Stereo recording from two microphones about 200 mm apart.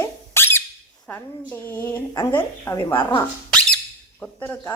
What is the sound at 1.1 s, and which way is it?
Speech, 10° left (ahead or behind).